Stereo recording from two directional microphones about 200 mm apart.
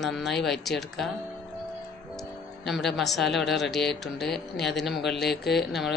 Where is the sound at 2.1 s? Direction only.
Centre (ahead or behind).